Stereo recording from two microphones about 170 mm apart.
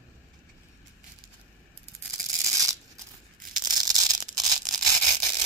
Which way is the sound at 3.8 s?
20° right (ahead or behind).